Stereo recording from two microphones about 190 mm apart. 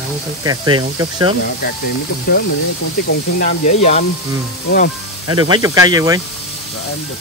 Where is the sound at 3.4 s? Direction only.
40° left (ahead or behind).